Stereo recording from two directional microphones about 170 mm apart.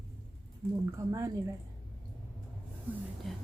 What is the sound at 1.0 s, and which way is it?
Speech, 20° right (ahead or behind).